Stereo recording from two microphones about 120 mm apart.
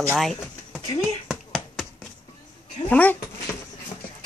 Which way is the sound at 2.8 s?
15° left (ahead or behind).